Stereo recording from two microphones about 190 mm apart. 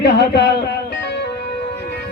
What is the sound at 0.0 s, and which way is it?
Speech, 60° left (ahead or behind).